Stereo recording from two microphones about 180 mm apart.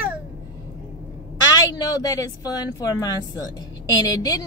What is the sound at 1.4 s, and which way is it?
A woman's voice, 20° left (ahead or behind).